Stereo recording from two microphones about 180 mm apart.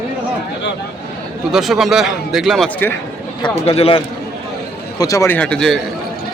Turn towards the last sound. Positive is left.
turn(degrees=5)  # may be behind; listen again after turning